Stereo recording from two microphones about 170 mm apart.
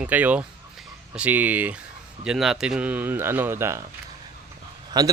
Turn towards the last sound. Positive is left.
turn(degrees=-25)  # may be behind; listen again after turning